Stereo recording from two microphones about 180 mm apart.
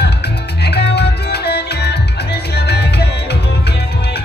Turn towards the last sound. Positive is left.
turn(degrees=65)  # may be behind; listen again after turning